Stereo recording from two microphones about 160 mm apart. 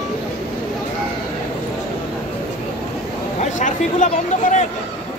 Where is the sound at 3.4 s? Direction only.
50° left (ahead or behind).